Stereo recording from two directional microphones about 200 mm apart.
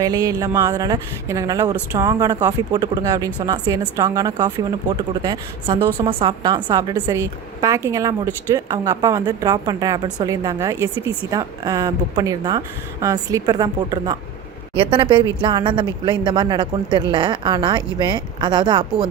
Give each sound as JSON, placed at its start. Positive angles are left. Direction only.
{"t": 0.0, "sound": "a woman's voice", "side_deg": -15}